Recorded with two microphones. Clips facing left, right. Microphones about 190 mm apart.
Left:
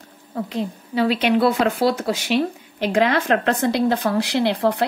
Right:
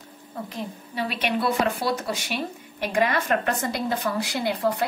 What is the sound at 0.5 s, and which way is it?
Speech, 75° left (ahead or behind).